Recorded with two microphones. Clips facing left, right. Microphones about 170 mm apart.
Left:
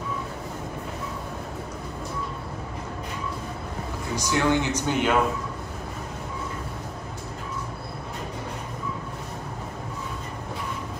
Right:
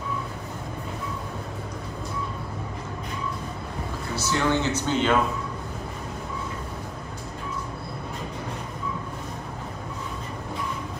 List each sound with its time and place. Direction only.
4.1 s speech: 15° left (ahead or behind)